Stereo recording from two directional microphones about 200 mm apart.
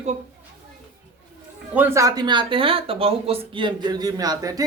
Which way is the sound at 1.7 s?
10° right (ahead or behind).